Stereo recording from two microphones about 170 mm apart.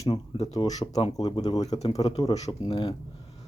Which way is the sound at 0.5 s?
20° left (ahead or behind).